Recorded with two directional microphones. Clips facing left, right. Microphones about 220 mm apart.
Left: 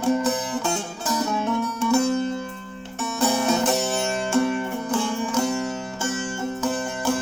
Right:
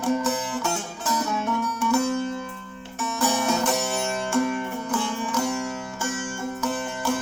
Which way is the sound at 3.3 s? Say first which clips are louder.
Left 3 dB; 25° left (ahead or behind).